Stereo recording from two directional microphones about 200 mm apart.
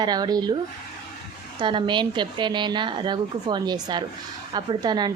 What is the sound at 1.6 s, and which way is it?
A woman's voice, 25° right (ahead or behind).